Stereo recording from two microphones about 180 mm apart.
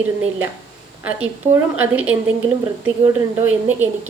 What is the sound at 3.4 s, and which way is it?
Speech, 10° right (ahead or behind).